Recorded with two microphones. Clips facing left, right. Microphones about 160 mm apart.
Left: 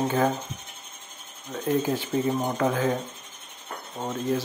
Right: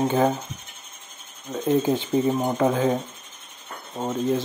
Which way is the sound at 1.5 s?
20° right (ahead or behind).